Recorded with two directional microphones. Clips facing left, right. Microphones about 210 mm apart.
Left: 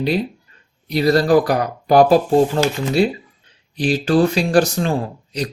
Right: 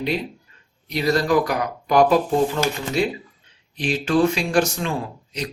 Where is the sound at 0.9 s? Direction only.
35° left (ahead or behind).